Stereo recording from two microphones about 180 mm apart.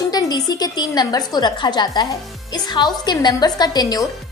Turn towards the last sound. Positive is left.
turn(degrees=20)  # may be behind; listen again after turning